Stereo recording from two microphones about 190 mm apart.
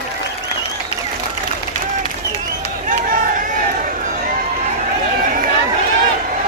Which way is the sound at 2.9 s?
45° right (ahead or behind).